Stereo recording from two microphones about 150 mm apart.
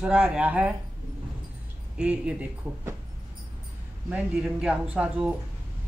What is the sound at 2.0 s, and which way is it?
Speech, 5° right (ahead or behind).